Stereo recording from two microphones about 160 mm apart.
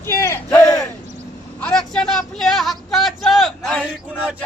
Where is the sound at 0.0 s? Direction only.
15° left (ahead or behind).